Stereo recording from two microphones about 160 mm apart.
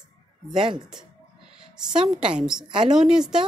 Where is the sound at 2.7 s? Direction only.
30° right (ahead or behind).